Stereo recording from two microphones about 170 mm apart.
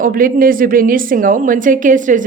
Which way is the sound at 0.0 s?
55° right (ahead or behind).